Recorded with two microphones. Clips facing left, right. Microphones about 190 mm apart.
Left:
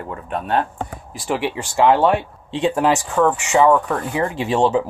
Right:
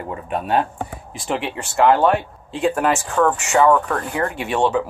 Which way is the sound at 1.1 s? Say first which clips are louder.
Left 3 dB; 5° left (ahead or behind).